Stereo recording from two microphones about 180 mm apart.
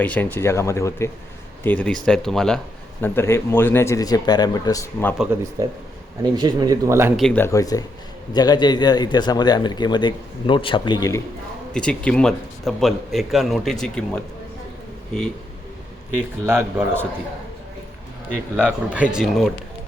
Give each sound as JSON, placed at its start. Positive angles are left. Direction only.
{"t": 0.0, "sound": "a man's voice", "side_deg": 10}
{"t": 3.0, "sound": "speech", "side_deg": 15}
{"t": 5.1, "sound": "a man's voice", "side_deg": -5}
{"t": 5.6, "sound": "a man's voice", "side_deg": -20}
{"t": 7.2, "sound": "a man's voice", "side_deg": 5}
{"t": 7.4, "sound": "a man's voice", "side_deg": 20}
{"t": 11.7, "sound": "a man's voice", "side_deg": 5}
{"t": 16.5, "sound": "a man's voice", "side_deg": -15}
{"t": 18.5, "sound": "a man's voice", "side_deg": -10}